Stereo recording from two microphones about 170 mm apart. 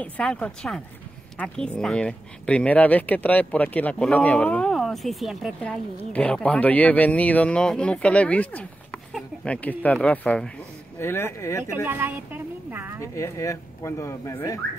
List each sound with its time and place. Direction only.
0.0 s speech: 5° left (ahead or behind)
9.1 s a sound: 5° left (ahead or behind)
10.0 s speech: 5° left (ahead or behind)
11.8 s speech: 10° right (ahead or behind)
13.0 s speech: 20° left (ahead or behind)